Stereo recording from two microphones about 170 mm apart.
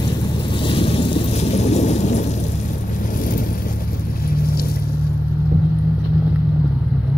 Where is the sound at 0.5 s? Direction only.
30° left (ahead or behind).